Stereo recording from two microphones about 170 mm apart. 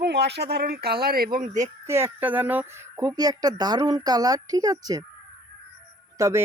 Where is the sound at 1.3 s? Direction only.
50° right (ahead or behind).